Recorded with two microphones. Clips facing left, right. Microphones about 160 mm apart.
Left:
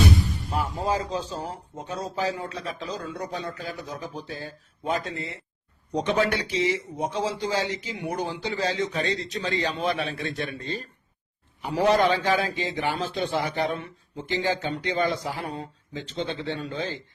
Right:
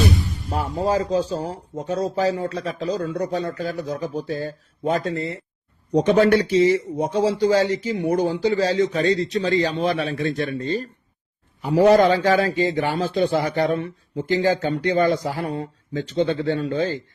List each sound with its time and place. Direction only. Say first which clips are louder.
0.5 s speech: right 5 dB; 40° right (ahead or behind)
13.0 s speech: right 7 dB; 40° right (ahead or behind)